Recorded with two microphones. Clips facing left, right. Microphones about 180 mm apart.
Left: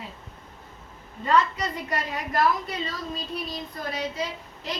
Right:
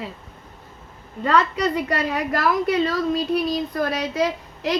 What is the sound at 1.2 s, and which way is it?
A woman's voice, 75° right (ahead or behind).